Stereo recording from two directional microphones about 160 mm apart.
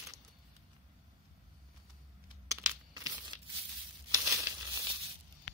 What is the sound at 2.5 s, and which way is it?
Crumpling, 20° right (ahead or behind).